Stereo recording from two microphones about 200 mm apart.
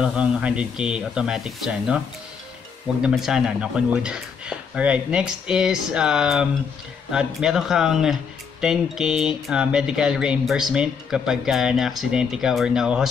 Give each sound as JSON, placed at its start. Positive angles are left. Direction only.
{"t": 0.0, "sound": "speech", "side_deg": -5}
{"t": 3.0, "sound": "speech", "side_deg": -5}